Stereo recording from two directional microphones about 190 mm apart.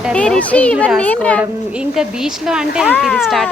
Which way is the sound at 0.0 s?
5° left (ahead or behind).